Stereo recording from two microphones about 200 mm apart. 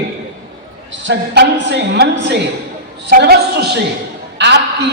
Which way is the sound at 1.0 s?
60° right (ahead or behind).